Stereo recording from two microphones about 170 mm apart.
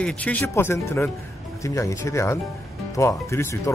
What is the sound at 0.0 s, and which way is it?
Speech, 5° left (ahead or behind).